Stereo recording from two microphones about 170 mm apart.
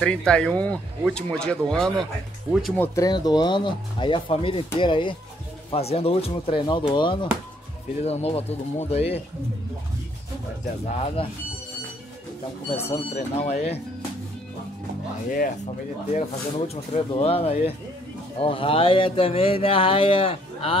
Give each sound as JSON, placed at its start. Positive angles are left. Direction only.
{"t": 0.0, "sound": "speech", "side_deg": 5}
{"t": 10.9, "sound": "speech", "side_deg": 35}
{"t": 12.7, "sound": "speech", "side_deg": 35}
{"t": 15.3, "sound": "speech", "side_deg": 50}